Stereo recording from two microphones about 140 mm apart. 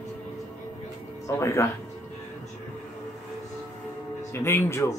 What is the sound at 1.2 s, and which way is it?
Speech, 20° left (ahead or behind).